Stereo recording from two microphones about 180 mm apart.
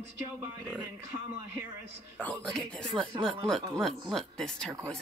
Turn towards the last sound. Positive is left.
turn(degrees=0)  # may be behind; listen again after turning